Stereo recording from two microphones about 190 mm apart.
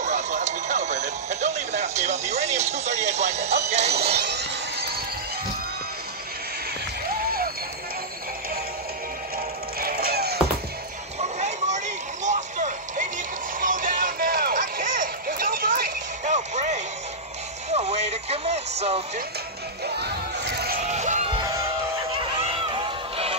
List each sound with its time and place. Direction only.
0.0 s a sound: 40° right (ahead or behind)
4.1 s music: 60° right (ahead or behind)
9.8 s music: 50° right (ahead or behind)
11.1 s a sound: 35° right (ahead or behind)
13.6 s music: 45° right (ahead or behind)
20.0 s a sound: 60° right (ahead or behind)
20.9 s music: 35° right (ahead or behind)
21.4 s music: 20° right (ahead or behind)
22.4 s music: 30° right (ahead or behind)